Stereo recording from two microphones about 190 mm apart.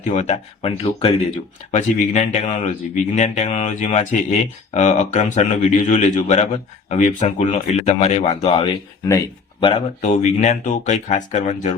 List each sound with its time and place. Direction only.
0.0 s speech: 40° left (ahead or behind)
10.1 s speech: 40° left (ahead or behind)